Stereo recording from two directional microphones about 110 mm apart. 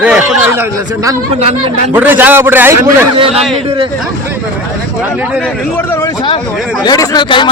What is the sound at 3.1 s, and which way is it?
Speech, 55° right (ahead or behind).